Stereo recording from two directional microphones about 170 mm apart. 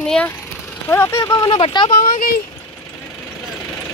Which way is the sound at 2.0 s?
55° left (ahead or behind).